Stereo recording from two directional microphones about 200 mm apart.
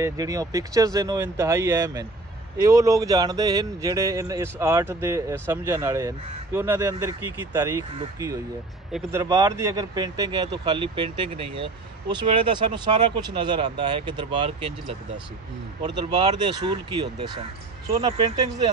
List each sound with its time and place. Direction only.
0.0 s speech: 15° right (ahead or behind)